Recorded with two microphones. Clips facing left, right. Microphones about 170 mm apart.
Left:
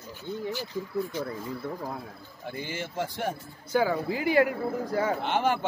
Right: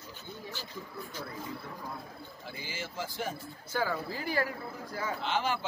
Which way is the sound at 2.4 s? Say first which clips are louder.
Left 8 dB; 55° left (ahead or behind).